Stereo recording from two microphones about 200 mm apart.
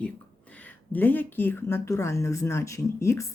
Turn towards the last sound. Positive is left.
turn(degrees=15)  # may be behind; listen again after turning